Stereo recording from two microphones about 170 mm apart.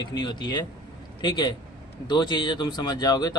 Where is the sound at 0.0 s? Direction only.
25° left (ahead or behind).